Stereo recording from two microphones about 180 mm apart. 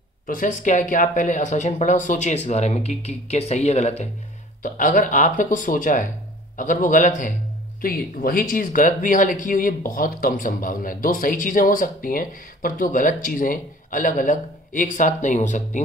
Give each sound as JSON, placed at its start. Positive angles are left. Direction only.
{"t": 0.3, "sound": "speech", "side_deg": 45}